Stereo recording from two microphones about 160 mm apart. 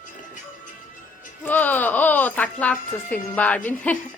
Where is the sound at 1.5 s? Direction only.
10° left (ahead or behind).